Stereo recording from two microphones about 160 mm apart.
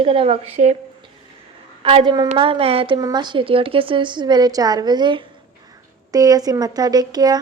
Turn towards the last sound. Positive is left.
turn(degrees=-25)  # may be behind; listen again after turning